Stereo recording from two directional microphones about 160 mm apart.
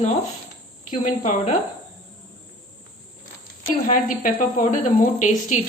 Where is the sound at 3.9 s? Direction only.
55° left (ahead or behind).